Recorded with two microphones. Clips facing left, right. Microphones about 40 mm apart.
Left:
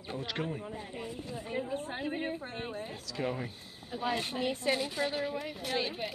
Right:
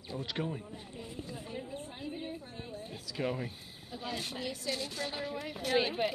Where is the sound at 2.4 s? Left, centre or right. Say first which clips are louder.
Left 6 dB; left.